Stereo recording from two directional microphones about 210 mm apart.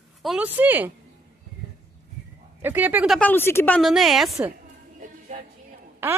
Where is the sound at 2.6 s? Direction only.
10° right (ahead or behind).